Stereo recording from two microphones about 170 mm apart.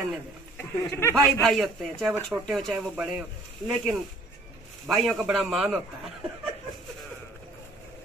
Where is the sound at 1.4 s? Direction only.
Centre (ahead or behind).